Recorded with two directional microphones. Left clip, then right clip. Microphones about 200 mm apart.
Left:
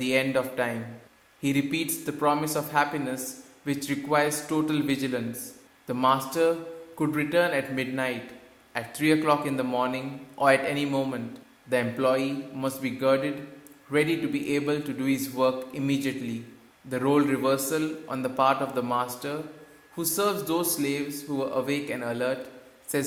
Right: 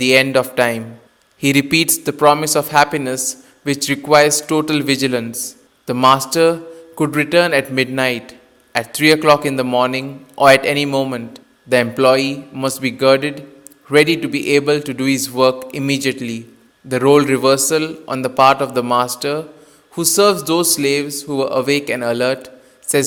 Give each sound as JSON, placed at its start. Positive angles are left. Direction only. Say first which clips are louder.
{"t": 0.0, "sound": "a man's voice", "louder": "right 12 dB", "side_deg": -45}